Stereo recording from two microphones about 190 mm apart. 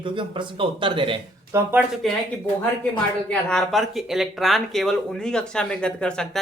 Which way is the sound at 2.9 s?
5° left (ahead or behind).